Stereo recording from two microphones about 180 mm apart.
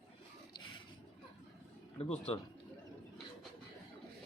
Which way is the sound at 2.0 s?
35° left (ahead or behind).